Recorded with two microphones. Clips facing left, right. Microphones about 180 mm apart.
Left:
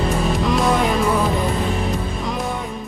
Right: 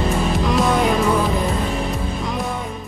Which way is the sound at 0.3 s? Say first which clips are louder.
Even; centre (ahead or behind).